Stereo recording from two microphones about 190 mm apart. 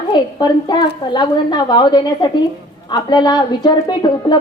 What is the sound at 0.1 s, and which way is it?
A woman's voice, 25° left (ahead or behind).